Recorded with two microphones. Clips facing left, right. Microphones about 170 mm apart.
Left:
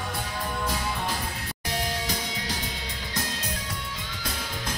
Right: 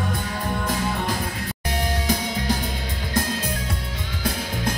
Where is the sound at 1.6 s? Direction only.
55° right (ahead or behind).